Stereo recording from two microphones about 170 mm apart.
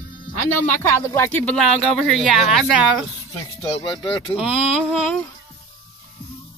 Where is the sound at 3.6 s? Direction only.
30° left (ahead or behind).